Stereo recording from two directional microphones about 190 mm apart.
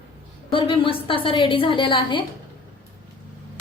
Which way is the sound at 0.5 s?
30° left (ahead or behind).